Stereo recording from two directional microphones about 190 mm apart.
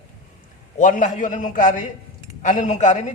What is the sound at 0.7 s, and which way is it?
A man's voice, 45° left (ahead or behind).